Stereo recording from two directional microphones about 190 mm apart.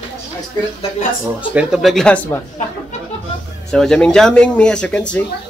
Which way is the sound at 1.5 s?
Centre (ahead or behind).